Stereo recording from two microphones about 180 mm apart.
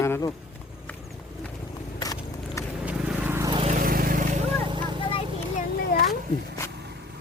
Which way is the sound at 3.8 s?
55° right (ahead or behind).